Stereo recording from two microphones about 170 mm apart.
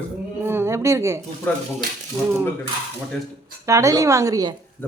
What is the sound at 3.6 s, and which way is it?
Speech, 20° right (ahead or behind).